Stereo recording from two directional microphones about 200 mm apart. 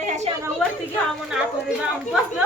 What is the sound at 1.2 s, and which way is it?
Speech, 5° right (ahead or behind).